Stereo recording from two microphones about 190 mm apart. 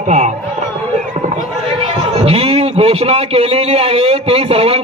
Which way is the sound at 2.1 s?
30° right (ahead or behind).